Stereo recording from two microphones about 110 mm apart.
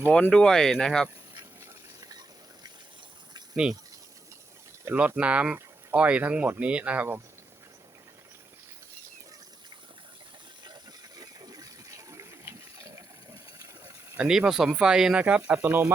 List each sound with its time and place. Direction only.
0.0 s speech: 10° left (ahead or behind)
2.0 s a sound: 35° right (ahead or behind)
3.5 s speech: 5° right (ahead or behind)
4.9 s speech: 10° right (ahead or behind)
11.2 s pig: 35° right (ahead or behind)
14.2 s speech: 5° right (ahead or behind)